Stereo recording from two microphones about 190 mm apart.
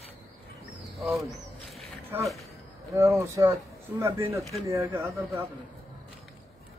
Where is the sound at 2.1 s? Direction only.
10° right (ahead or behind).